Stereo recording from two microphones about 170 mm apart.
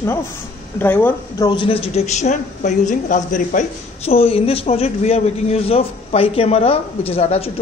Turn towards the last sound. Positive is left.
turn(degrees=35)  # may be behind; listen again after turning